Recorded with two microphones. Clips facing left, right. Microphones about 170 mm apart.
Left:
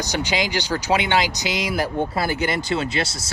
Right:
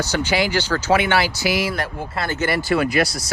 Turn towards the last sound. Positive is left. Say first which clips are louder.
# right 5 dB
turn(degrees=25)  # may be behind; listen again after turning